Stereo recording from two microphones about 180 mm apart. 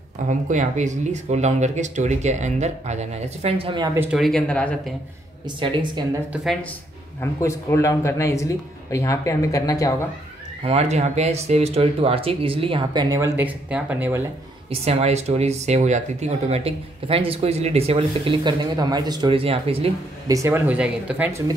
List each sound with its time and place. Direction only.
0.3 s speech: 45° right (ahead or behind)
3.9 s speech: 10° right (ahead or behind)
4.2 s speech: 5° left (ahead or behind)
5.6 s speech: 25° right (ahead or behind)
6.3 s speech: centre (ahead or behind)
7.2 s speech: 15° left (ahead or behind)
10.6 s speech: 35° right (ahead or behind); by 14.2 s 10° right (ahead or behind)
14.7 s speech: 35° right (ahead or behind)
20.2 s speech: 15° right (ahead or behind)